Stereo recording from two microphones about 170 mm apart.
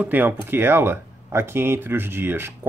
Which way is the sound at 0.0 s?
10° right (ahead or behind).